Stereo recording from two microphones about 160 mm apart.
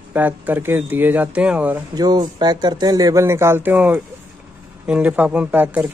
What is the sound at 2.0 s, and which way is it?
Speech, 25° right (ahead or behind).